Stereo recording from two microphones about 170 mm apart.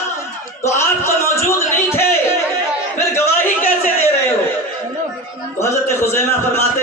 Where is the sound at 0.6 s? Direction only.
15° left (ahead or behind).